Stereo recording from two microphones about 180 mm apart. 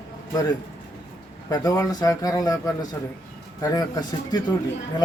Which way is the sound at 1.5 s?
20° left (ahead or behind).